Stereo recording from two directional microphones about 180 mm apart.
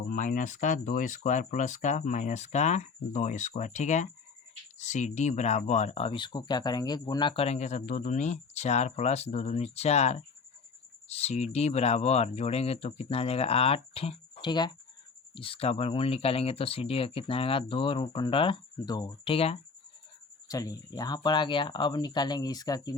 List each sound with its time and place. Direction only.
0.1 s speech: 50° left (ahead or behind); by 19.5 s 30° left (ahead or behind)
20.5 s speech: 20° left (ahead or behind)